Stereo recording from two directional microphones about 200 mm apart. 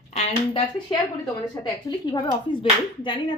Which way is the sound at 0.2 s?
25° left (ahead or behind).